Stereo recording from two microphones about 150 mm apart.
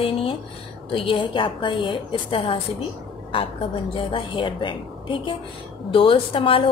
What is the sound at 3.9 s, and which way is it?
A woman's voice, 35° left (ahead or behind).